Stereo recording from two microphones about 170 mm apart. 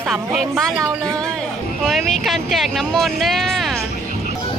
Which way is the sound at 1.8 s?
Centre (ahead or behind).